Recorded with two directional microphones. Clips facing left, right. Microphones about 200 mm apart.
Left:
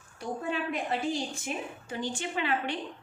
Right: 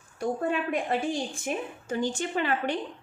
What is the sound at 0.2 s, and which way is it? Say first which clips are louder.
A woman's voice: right 5 dB; 50° right (ahead or behind).